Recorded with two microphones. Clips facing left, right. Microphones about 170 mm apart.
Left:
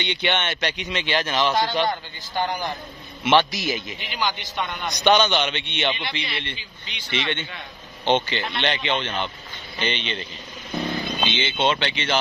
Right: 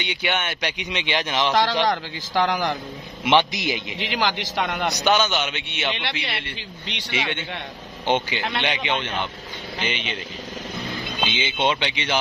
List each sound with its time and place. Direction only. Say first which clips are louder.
0.0 s speech: left 1 dB; 10° right (ahead or behind)
1.5 s speech: right 2 dB; 90° right
3.3 s speech: even; 15° right (ahead or behind)
4.0 s speech: right 3 dB; 90° right
4.9 s speech: left 4 dB; 5° right (ahead or behind)
6.5 s a man's voice: right 5 dB; 70° right (ahead or behind)
7.1 s speech: left 1 dB; 10° right (ahead or behind)
11.2 s speech: even; 10° right (ahead or behind)